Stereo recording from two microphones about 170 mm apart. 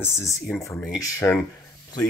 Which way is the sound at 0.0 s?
15° left (ahead or behind).